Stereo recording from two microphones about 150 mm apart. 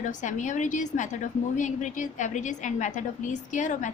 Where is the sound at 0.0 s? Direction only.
55° left (ahead or behind).